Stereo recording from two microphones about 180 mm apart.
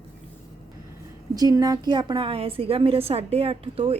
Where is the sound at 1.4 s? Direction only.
20° right (ahead or behind).